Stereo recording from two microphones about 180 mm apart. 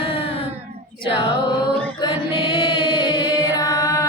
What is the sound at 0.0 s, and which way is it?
Child singing, 30° left (ahead or behind).